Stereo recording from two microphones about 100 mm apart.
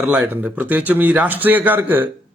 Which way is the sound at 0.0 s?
5° right (ahead or behind).